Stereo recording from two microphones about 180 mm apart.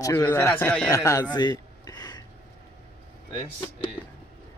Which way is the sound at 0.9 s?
20° left (ahead or behind).